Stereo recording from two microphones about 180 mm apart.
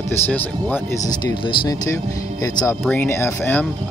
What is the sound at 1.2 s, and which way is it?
Speech, 20° left (ahead or behind).